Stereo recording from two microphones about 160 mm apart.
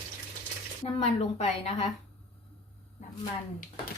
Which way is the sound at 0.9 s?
40° left (ahead or behind).